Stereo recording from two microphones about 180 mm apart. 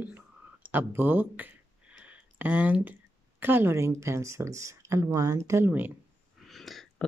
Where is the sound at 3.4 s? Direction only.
10° right (ahead or behind).